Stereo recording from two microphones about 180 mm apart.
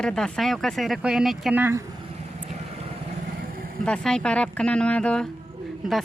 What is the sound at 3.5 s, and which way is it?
Vehicle, 55° right (ahead or behind).